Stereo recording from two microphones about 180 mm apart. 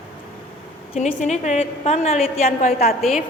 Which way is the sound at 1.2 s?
40° left (ahead or behind).